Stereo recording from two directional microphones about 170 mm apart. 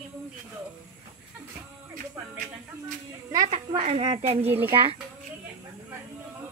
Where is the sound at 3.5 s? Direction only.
35° right (ahead or behind).